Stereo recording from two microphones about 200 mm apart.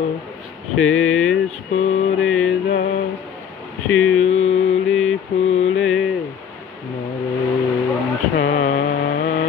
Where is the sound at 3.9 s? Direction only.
5° left (ahead or behind).